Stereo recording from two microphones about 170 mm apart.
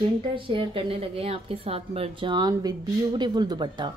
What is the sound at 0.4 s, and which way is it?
A woman's voice, 30° right (ahead or behind).